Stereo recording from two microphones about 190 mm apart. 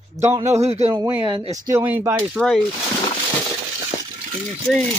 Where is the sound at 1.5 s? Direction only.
15° right (ahead or behind).